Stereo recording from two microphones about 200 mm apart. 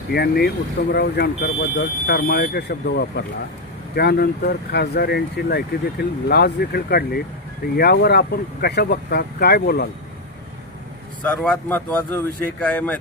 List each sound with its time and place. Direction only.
0.1 s speech: 50° left (ahead or behind)
11.2 s speech: 5° left (ahead or behind)